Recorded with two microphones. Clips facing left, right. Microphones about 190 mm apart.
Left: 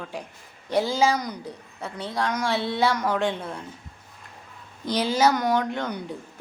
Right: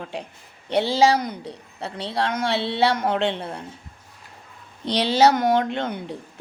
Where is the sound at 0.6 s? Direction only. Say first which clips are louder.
Right 3 dB; 70° right (ahead or behind).